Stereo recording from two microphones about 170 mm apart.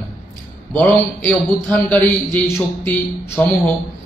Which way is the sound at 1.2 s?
Centre (ahead or behind).